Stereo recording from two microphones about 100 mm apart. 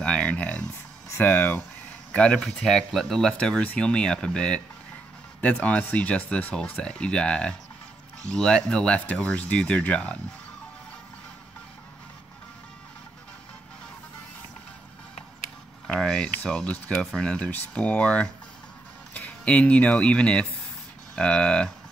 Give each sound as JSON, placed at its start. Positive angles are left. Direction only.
{"t": 0.0, "sound": "speech", "side_deg": 10}
{"t": 15.9, "sound": "speech", "side_deg": 10}